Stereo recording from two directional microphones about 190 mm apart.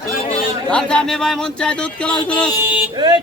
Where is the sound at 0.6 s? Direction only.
5° left (ahead or behind).